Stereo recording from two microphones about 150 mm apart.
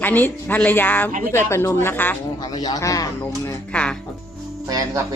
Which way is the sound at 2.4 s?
25° left (ahead or behind).